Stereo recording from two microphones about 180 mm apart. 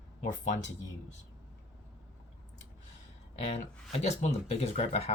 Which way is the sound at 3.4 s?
35° left (ahead or behind).